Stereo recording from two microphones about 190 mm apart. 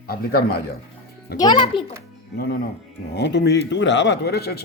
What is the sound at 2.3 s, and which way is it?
Speech, 55° left (ahead or behind).